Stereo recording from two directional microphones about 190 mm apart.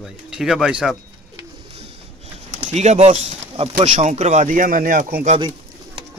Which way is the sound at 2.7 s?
35° right (ahead or behind).